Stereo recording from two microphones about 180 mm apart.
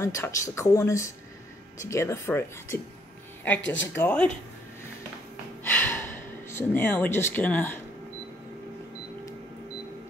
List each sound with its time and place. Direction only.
0.0 s speech: 15° left (ahead or behind)
3.6 s speech: 90° left
3.9 s speech: 10° left (ahead or behind)
5.6 s gasp: 10° left (ahead or behind)